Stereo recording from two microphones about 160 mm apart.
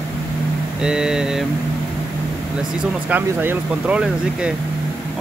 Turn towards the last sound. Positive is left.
turn(degrees=-5)  # may be behind; listen again after turning